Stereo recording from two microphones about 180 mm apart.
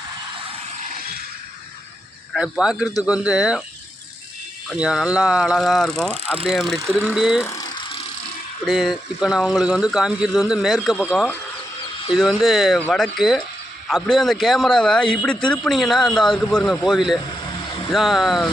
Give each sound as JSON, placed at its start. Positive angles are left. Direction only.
{"t": 0.9, "sound": "a sound", "side_deg": -55}
{"t": 2.3, "sound": "a man's voice", "side_deg": -5}
{"t": 4.7, "sound": "a man's voice", "side_deg": -5}
{"t": 7.4, "sound": "ratchet", "side_deg": 15}
{"t": 8.6, "sound": "a man's voice", "side_deg": 0}
{"t": 12.2, "sound": "a man's voice", "side_deg": 0}